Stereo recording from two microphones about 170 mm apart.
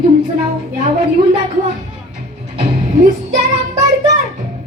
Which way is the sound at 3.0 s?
50° right (ahead or behind).